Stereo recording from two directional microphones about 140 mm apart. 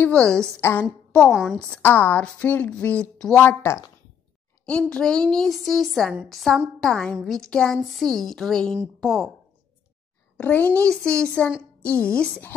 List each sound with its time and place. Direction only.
0.0 s a woman's voice: 10° left (ahead or behind)
1.3 s a woman's voice: 5° right (ahead or behind)
1.6 s a woman's voice: 10° left (ahead or behind)
3.3 s a woman's voice: 15° left (ahead or behind)
4.6 s a woman's voice: 10° left (ahead or behind)
10.3 s a woman's voice: 10° left (ahead or behind)